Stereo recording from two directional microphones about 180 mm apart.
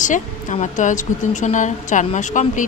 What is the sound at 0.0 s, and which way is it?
A woman's voice, 45° left (ahead or behind).